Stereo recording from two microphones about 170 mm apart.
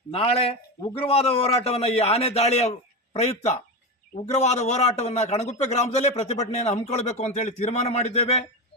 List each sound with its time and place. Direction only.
0.1 s a man's voice: 35° left (ahead or behind)